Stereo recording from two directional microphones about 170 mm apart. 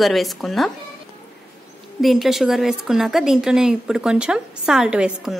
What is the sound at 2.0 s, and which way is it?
A woman's voice, centre (ahead or behind).